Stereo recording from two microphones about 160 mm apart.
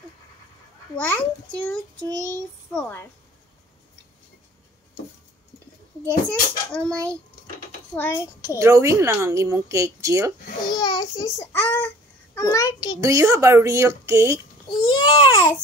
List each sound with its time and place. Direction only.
0.9 s a child's voice: 10° left (ahead or behind)
2.0 s child singing: 20° right (ahead or behind)
2.7 s a child's voice: 10° left (ahead or behind)
6.7 s a child's voice: 5° left (ahead or behind)
8.5 s a woman's voice: 20° right (ahead or behind)
10.7 s a child's voice: 25° left (ahead or behind)
13.0 s a woman's voice: 20° right (ahead or behind)
14.7 s babbling: 25° left (ahead or behind)